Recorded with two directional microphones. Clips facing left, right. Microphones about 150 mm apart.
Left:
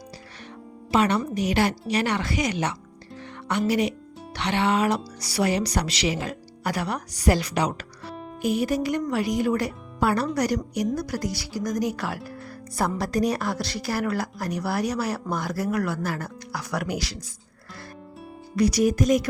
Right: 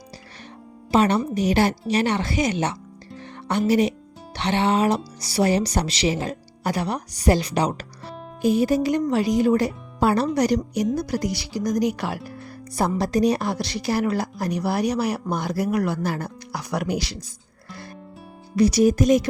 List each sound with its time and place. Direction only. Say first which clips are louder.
0.9 s a woman's voice: right 3 dB; 30° right (ahead or behind)
18.5 s speech: right 4 dB; 30° right (ahead or behind)